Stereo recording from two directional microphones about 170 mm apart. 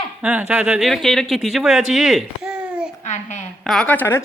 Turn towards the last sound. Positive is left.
turn(degrees=10)  # may be behind; listen again after turning